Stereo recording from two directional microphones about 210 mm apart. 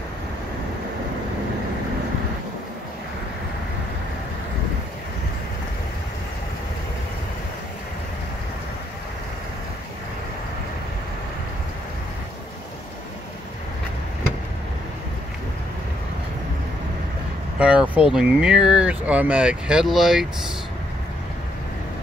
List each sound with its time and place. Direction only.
17.6 s speech: 5° right (ahead or behind)